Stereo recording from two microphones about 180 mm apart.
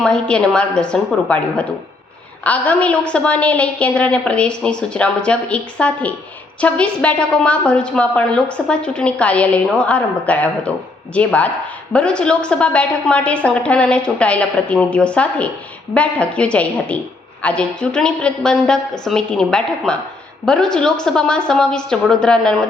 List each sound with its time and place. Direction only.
0.0 s a woman's voice: 5° left (ahead or behind)